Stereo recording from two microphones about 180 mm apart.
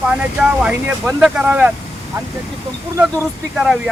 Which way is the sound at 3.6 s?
Centre (ahead or behind).